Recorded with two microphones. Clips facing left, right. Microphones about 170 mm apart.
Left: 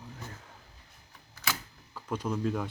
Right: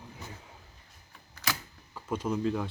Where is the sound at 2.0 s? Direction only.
5° right (ahead or behind).